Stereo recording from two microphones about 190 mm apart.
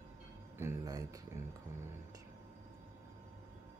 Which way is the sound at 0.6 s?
15° right (ahead or behind).